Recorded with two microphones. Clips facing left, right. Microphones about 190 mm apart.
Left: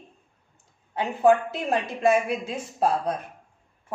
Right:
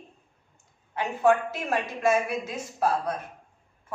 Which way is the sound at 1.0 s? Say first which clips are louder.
Left 3 dB; 30° left (ahead or behind).